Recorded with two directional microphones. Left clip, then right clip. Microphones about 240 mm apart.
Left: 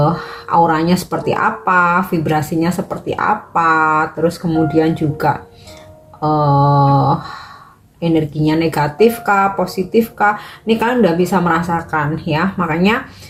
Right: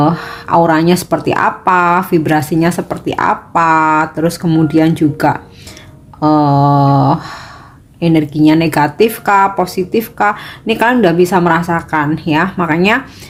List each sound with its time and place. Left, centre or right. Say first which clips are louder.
0.0 s speech: right 3 dB; right